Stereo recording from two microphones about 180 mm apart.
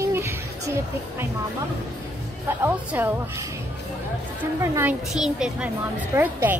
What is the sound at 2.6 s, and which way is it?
Speech, 10° right (ahead or behind).